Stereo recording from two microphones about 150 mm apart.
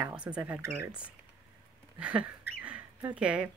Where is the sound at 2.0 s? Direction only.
10° right (ahead or behind).